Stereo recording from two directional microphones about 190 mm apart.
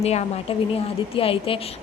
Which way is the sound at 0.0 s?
35° left (ahead or behind).